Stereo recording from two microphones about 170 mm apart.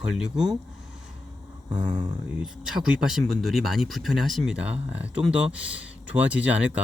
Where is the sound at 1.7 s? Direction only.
25° right (ahead or behind).